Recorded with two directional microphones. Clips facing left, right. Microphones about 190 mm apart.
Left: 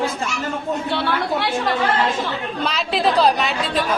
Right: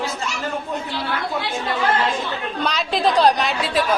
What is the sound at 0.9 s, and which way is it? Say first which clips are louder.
Speech: left 4 dB; 70° left (ahead or behind).